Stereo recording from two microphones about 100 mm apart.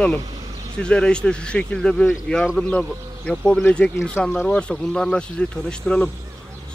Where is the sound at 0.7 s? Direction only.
10° left (ahead or behind).